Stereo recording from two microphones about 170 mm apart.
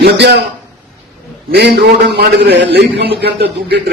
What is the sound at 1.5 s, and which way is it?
A man's voice, 70° right (ahead or behind).